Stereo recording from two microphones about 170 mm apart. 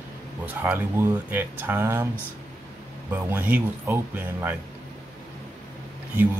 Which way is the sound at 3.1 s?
10° right (ahead or behind).